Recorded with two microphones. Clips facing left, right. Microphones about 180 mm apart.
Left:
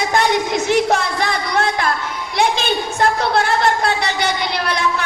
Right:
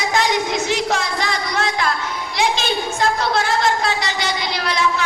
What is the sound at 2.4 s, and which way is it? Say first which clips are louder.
A woman's voice: left 2 dB; 60° left (ahead or behind).